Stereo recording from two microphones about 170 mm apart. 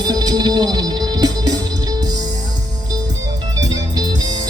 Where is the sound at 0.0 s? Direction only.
25° right (ahead or behind).